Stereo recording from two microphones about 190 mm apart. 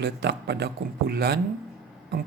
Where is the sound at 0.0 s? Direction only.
65° right (ahead or behind).